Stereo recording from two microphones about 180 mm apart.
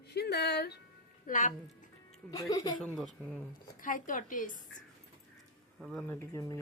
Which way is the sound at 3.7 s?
45° left (ahead or behind).